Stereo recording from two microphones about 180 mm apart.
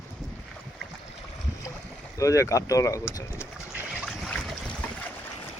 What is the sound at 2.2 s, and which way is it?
Speech, 15° left (ahead or behind).